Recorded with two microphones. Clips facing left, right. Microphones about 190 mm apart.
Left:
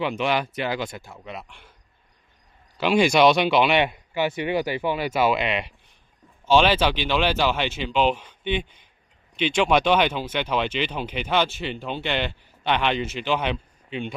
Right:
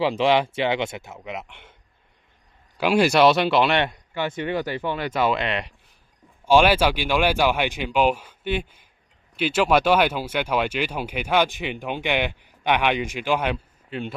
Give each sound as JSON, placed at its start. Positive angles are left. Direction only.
{"t": 0.0, "sound": "speech", "side_deg": -30}
{"t": 2.8, "sound": "speech", "side_deg": -5}
{"t": 6.4, "sound": "speech", "side_deg": -10}